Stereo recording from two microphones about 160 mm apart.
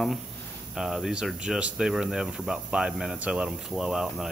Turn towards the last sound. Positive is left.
turn(degrees=-5)  # may be behind; listen again after turning